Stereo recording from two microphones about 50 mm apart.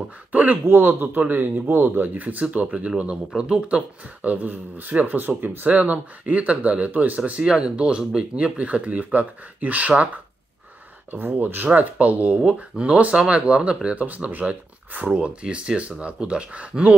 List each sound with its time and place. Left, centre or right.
0.3 s speech: right
2.2 s speech: right
11.1 s speech: right